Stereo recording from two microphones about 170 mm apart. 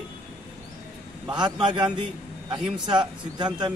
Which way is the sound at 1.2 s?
25° right (ahead or behind).